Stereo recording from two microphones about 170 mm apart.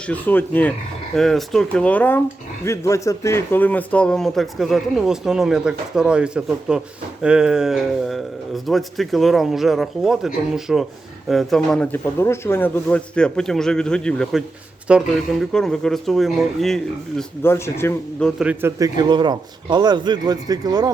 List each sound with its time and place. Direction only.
0.1 s speech: 10° left (ahead or behind)
17.4 s speech: 15° left (ahead or behind)
18.2 s speech: centre (ahead or behind)
18.6 s speech: 20° right (ahead or behind)